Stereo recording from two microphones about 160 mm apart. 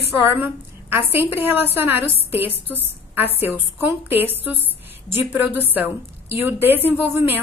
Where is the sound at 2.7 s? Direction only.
10° right (ahead or behind).